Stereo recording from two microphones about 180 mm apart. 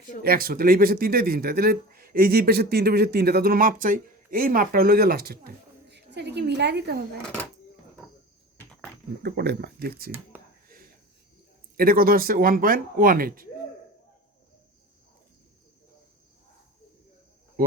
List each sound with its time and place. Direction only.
0.2 s a woman's voice: 55° right (ahead or behind)
9.2 s speech: 60° right (ahead or behind)
11.8 s speech: 55° right (ahead or behind)